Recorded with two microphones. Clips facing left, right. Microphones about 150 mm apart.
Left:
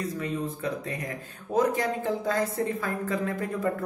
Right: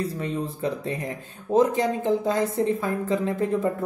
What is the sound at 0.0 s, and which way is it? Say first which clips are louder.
Speech: right 3 dB; 30° right (ahead or behind).